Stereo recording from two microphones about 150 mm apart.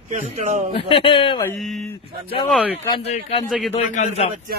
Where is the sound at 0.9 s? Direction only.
35° left (ahead or behind).